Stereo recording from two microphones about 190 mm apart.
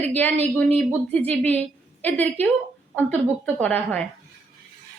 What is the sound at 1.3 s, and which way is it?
A woman's voice, 10° left (ahead or behind).